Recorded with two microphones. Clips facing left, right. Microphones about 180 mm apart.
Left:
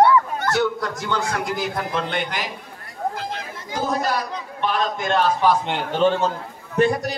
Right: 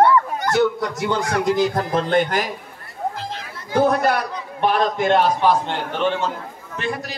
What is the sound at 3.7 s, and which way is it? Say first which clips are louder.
Speech: right 6 dB; 60° right (ahead or behind).